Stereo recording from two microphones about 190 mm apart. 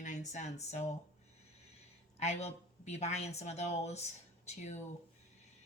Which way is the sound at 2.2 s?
35° left (ahead or behind).